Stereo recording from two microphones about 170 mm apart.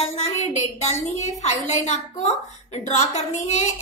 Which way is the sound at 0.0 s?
40° left (ahead or behind).